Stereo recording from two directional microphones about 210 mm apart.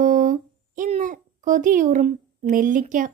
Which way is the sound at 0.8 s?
35° right (ahead or behind).